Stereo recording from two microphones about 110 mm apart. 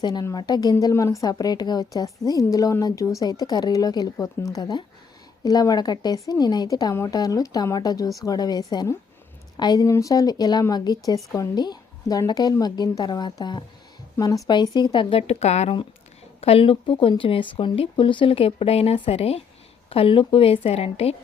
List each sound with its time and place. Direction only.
0.0 s a woman's voice: 35° left (ahead or behind)
15.3 s speech: 80° left
16.4 s speech: 60° left (ahead or behind)
19.9 s a woman's voice: 55° left (ahead or behind)